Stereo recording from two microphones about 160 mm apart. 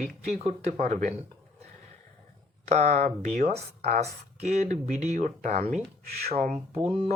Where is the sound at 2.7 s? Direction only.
45° right (ahead or behind).